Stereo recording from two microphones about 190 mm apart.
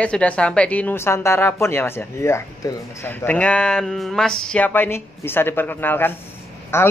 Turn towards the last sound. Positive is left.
turn(degrees=15)  # may be behind; listen again after turning